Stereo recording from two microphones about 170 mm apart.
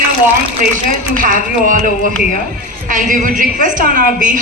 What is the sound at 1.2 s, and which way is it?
Speech, 50° right (ahead or behind).